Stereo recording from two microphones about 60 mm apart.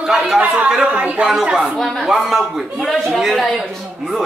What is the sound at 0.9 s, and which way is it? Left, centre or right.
Speech, right.